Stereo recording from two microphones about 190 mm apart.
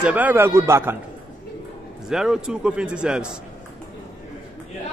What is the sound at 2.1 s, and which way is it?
A man's voice, 5° right (ahead or behind).